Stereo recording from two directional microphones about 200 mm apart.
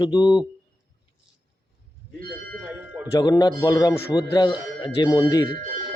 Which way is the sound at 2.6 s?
5° right (ahead or behind).